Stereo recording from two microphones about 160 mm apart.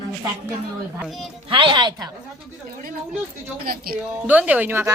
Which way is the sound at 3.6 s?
70° right (ahead or behind).